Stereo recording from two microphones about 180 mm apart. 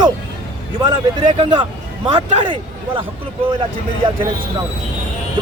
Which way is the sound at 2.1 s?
30° right (ahead or behind).